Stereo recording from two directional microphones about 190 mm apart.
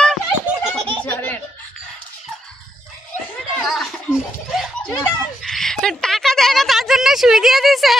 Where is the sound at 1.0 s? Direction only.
10° left (ahead or behind).